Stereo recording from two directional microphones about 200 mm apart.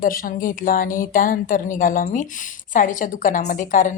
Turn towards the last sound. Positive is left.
turn(degrees=40)  # may be behind; listen again after turning